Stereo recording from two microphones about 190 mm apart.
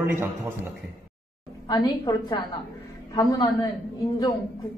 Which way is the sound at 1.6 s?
20° left (ahead or behind).